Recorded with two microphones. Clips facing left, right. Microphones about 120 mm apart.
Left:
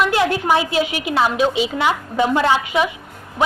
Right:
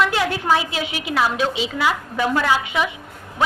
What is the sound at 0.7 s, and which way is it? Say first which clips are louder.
Speech: left 6 dB; 30° right (ahead or behind).